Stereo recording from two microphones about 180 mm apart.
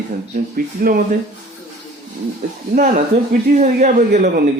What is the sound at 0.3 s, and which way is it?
Speech, 55° right (ahead or behind).